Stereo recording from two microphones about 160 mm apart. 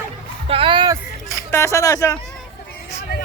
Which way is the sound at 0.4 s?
35° right (ahead or behind).